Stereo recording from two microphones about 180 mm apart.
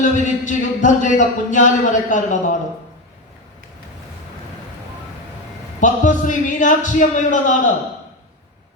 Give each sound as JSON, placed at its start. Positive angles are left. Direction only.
{"t": 0.0, "sound": "speech", "side_deg": 45}
{"t": 5.8, "sound": "speech", "side_deg": 45}